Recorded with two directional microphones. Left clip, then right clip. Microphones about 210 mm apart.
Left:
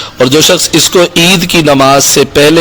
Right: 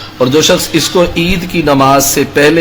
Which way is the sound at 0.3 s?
45° left (ahead or behind).